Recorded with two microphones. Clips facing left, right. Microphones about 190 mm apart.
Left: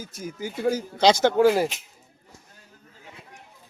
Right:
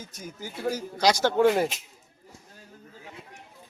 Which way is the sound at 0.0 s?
5° left (ahead or behind).